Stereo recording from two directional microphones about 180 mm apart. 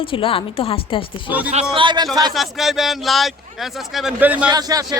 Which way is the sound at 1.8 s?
25° right (ahead or behind).